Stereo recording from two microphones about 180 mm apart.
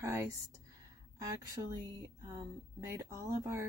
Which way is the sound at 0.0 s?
15° right (ahead or behind).